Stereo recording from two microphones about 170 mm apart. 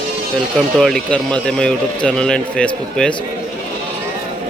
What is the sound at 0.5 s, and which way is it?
Speech, centre (ahead or behind).